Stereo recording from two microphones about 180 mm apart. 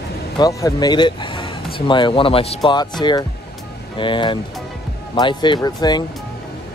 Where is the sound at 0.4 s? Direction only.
20° left (ahead or behind).